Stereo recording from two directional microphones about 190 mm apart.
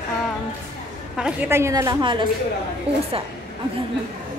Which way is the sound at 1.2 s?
5° right (ahead or behind).